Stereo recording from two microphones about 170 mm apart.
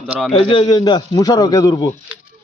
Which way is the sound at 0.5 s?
25° left (ahead or behind).